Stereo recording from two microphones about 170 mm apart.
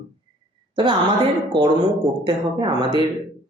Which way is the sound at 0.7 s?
25° right (ahead or behind).